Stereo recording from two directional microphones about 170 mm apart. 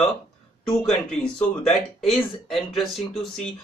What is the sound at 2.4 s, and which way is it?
Speech, centre (ahead or behind).